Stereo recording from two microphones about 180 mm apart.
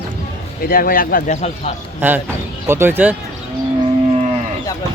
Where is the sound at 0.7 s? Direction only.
55° left (ahead or behind).